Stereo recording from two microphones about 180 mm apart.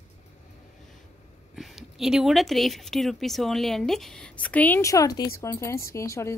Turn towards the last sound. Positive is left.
turn(degrees=15)  # may be behind; listen again after turning